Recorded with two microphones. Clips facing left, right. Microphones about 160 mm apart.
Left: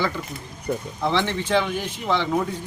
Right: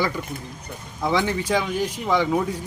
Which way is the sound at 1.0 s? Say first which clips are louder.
Right 3 dB; 10° right (ahead or behind).